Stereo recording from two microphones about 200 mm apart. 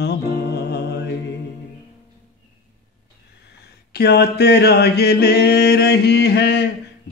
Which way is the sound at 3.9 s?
55° left (ahead or behind).